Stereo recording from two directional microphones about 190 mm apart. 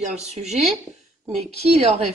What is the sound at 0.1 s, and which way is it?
A woman's voice, 35° right (ahead or behind).